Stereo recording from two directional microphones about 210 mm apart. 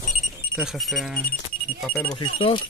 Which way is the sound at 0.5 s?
Centre (ahead or behind).